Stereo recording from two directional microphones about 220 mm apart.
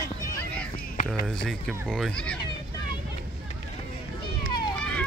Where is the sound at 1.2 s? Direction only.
5° left (ahead or behind).